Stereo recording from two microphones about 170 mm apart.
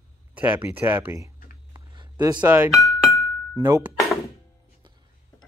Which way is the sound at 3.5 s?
15° right (ahead or behind).